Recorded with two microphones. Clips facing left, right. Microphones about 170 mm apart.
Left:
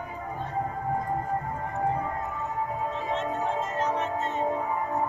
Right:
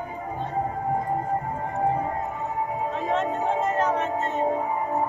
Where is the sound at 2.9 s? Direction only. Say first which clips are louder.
Right 4 dB; 55° right (ahead or behind).